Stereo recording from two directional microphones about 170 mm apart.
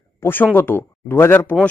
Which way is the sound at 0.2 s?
10° left (ahead or behind).